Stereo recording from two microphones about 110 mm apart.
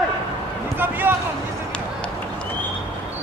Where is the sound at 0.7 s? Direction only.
20° right (ahead or behind).